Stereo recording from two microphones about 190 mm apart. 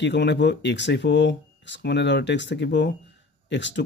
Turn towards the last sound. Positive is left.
turn(degrees=70)  # may be behind; listen again after turning